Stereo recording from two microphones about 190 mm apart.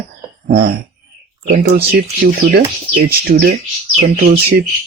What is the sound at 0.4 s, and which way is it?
Speech, 50° right (ahead or behind).